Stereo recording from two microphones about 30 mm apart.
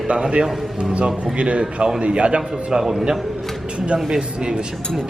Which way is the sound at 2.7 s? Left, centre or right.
Right.